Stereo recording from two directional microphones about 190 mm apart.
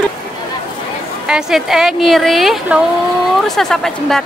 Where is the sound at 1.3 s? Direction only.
5° right (ahead or behind).